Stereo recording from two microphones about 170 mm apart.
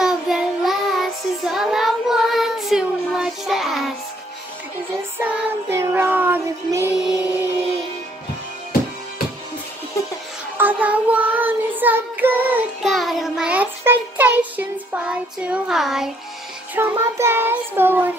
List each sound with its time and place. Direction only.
0.0 s child singing: centre (ahead or behind)
5.2 s child singing: 15° right (ahead or behind)
10.6 s child singing: 10° right (ahead or behind)
12.8 s child singing: centre (ahead or behind)
16.7 s child singing: 15° right (ahead or behind)